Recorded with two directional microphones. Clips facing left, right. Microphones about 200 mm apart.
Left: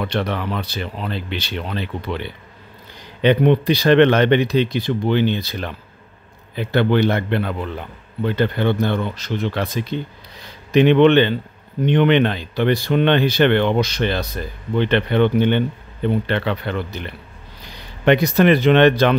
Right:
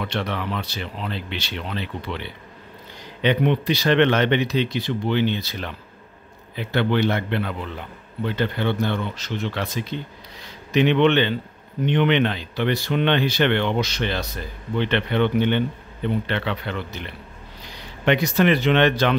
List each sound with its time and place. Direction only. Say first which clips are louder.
0.0 s speech: left 4 dB; 50° left (ahead or behind)
18.0 s speech: left 4 dB; 55° left (ahead or behind)